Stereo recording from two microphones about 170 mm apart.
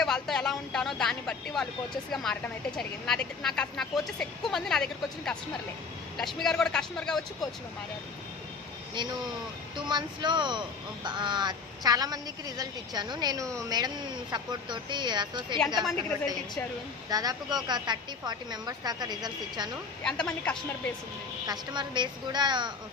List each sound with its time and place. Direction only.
0.0 s a sound: centre (ahead or behind)
2.1 s a woman's voice: 5° left (ahead or behind)
9.0 s speech: 25° right (ahead or behind)
15.8 s a woman's voice: centre (ahead or behind)
17.1 s speech: 20° right (ahead or behind)
20.1 s a woman's voice: 5° left (ahead or behind)
21.4 s speech: 25° right (ahead or behind)